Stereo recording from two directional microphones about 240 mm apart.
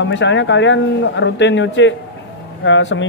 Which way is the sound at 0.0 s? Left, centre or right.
Left.